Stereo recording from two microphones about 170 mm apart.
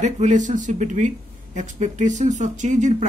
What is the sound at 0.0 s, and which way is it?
Speech, 45° right (ahead or behind).